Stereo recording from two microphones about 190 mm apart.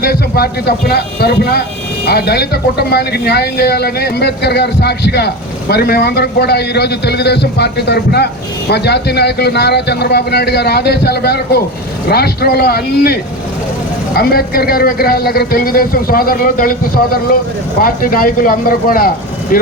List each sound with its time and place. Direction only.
0.0 s speech: 55° left (ahead or behind)
14.2 s speech: 50° left (ahead or behind)